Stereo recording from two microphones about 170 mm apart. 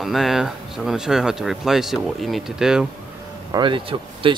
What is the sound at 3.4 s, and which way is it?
Speech, 25° right (ahead or behind).